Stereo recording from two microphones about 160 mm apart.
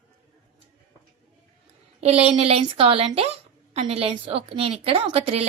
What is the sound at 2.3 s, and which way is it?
A woman's voice, 35° right (ahead or behind).